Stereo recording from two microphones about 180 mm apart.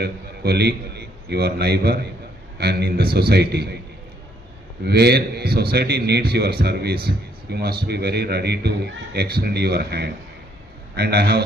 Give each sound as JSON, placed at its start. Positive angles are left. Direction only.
{"t": 0.0, "sound": "a man's voice", "side_deg": -65}
{"t": 4.9, "sound": "a man's voice", "side_deg": -65}